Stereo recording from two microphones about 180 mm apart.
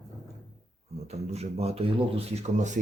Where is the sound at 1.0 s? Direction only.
35° right (ahead or behind).